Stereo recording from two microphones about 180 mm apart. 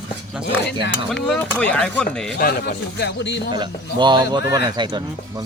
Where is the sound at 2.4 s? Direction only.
55° left (ahead or behind); by 3.4 s 75° left (ahead or behind).